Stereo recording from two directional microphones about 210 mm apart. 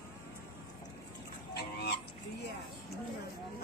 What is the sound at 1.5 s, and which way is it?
Goose, 50° left (ahead or behind).